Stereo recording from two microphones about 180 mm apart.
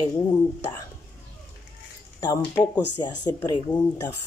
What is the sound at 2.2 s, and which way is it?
Speech, 25° left (ahead or behind).